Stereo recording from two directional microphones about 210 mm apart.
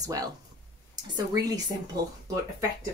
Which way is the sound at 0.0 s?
15° right (ahead or behind).